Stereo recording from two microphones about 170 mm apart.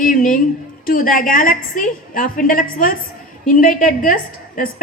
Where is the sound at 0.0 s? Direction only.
50° left (ahead or behind).